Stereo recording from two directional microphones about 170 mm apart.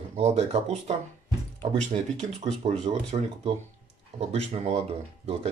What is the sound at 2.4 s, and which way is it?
Speech, 40° right (ahead or behind).